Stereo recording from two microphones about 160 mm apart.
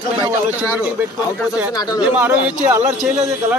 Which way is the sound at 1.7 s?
25° left (ahead or behind).